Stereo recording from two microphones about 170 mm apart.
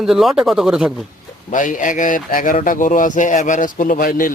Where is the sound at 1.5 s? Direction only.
50° left (ahead or behind).